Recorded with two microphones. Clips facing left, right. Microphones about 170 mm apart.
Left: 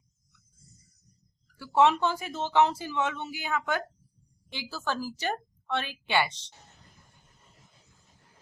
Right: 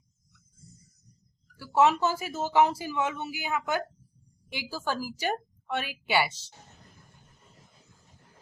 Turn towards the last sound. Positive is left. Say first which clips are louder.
# right 1 dB
turn(degrees=-10)  # may be behind; listen again after turning